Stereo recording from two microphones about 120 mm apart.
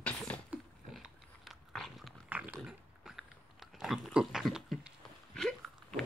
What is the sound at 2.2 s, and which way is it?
Dog, 15° right (ahead or behind).